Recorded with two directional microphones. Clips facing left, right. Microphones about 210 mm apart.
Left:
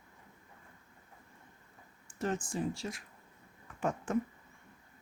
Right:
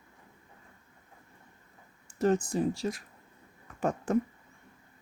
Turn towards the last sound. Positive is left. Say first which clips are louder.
# right 5 dB
turn(degrees=-35)  # may be behind; listen again after turning